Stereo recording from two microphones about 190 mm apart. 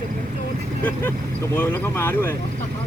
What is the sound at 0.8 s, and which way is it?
Speech, 15° left (ahead or behind).